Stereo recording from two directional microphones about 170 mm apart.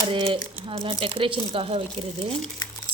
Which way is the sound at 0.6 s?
30° right (ahead or behind).